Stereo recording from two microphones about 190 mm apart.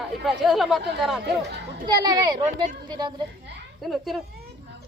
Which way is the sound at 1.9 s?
20° right (ahead or behind).